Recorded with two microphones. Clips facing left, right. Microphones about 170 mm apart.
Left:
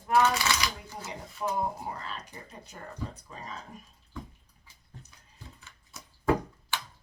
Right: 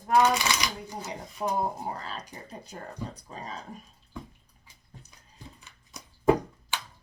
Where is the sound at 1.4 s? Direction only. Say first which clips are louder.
Right 2 dB; 35° right (ahead or behind).